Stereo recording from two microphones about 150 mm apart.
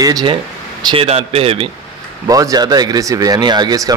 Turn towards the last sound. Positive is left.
turn(degrees=-25)  # may be behind; listen again after turning